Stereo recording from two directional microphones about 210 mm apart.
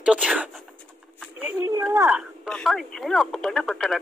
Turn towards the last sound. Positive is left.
turn(degrees=0)  # may be behind; listen again after turning